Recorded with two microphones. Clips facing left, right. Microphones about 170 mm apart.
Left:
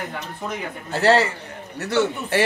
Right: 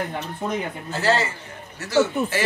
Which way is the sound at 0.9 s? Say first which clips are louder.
Left 5 dB; 65° left (ahead or behind).